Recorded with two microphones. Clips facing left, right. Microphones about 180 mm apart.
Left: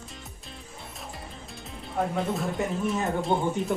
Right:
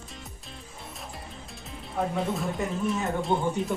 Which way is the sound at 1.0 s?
Centre (ahead or behind).